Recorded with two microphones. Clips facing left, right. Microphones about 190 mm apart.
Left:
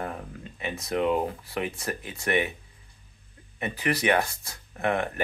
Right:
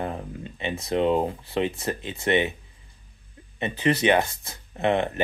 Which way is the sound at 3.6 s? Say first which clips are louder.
Right 5 dB; 25° right (ahead or behind).